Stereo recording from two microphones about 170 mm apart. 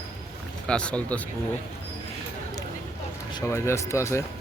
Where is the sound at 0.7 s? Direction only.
5° left (ahead or behind).